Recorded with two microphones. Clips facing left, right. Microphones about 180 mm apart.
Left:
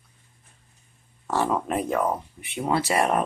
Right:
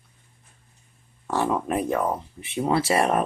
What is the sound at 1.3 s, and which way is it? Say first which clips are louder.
Speech: even; 15° right (ahead or behind).